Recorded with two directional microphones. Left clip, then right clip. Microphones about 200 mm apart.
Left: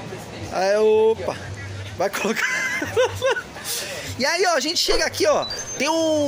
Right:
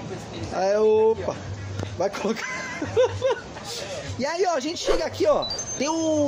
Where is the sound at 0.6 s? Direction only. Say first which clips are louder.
Left 2 dB; centre (ahead or behind).